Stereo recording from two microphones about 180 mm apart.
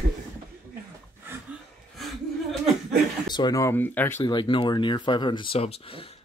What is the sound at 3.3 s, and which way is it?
Speech, 20° left (ahead or behind).